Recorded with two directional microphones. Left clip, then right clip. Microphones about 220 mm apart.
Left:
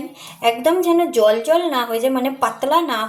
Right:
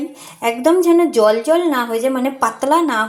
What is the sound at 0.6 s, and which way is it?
A woman's voice, 15° right (ahead or behind).